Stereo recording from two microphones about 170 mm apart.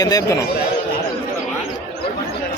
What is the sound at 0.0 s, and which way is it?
Speech, 20° left (ahead or behind).